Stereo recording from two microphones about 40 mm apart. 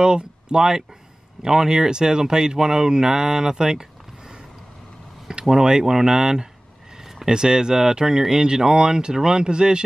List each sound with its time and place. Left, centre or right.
0.0 s speech: right
5.3 s speech: centre